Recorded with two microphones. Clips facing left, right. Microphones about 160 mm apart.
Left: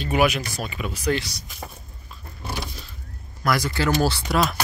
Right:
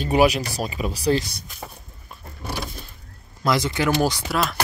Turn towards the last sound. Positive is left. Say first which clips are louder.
# left 2 dB
turn(degrees=0)  # may be behind; listen again after turning